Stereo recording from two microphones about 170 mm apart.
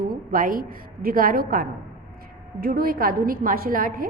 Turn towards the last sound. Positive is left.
turn(degrees=-55)  # may be behind; listen again after turning